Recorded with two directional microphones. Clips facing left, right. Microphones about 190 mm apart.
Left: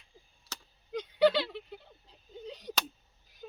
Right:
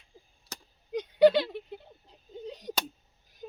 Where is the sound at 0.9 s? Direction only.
15° right (ahead or behind).